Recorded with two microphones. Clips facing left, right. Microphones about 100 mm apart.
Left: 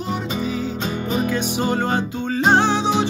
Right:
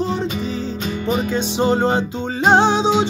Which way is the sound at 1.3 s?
25° right (ahead or behind).